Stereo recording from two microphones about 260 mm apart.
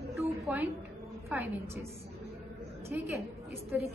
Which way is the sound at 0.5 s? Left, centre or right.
Centre.